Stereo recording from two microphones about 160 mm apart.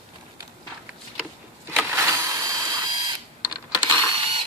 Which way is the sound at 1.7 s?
15° right (ahead or behind).